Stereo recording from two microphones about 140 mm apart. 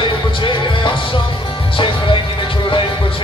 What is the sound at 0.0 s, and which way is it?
Music, 35° left (ahead or behind).